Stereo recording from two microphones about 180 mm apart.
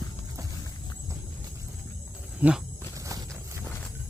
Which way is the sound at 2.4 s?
10° right (ahead or behind).